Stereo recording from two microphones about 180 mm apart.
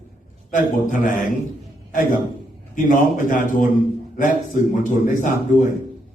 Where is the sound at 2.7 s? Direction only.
50° left (ahead or behind).